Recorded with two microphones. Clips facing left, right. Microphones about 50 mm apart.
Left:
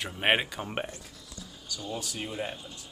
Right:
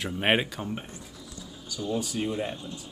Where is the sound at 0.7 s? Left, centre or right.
Left.